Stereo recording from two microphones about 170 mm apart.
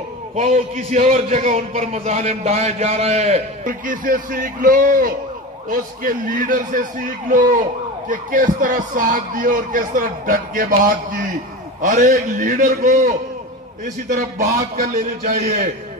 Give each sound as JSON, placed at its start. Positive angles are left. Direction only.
{"t": 0.4, "sound": "a man's voice", "side_deg": -40}
{"t": 3.6, "sound": "speech", "side_deg": -55}
{"t": 14.8, "sound": "a man's voice", "side_deg": -60}